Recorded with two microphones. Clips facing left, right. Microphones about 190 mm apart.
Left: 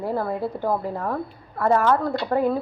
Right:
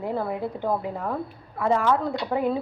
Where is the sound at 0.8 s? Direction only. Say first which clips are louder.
Left 2 dB; 10° right (ahead or behind).